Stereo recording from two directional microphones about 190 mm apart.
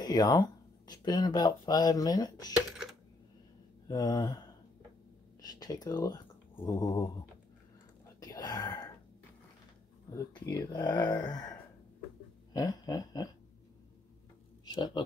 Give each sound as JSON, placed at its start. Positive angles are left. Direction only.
{"t": 0.0, "sound": "speech", "side_deg": 20}
{"t": 3.9, "sound": "speech", "side_deg": 20}
{"t": 5.4, "sound": "speech", "side_deg": 20}
{"t": 6.5, "sound": "mantra", "side_deg": 15}
{"t": 8.2, "sound": "whispering", "side_deg": 20}
{"t": 10.1, "sound": "speech", "side_deg": 20}
{"t": 12.5, "sound": "speech", "side_deg": 20}
{"t": 14.6, "sound": "speech", "side_deg": 20}